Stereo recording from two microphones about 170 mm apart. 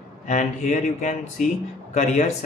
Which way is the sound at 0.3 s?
45° left (ahead or behind).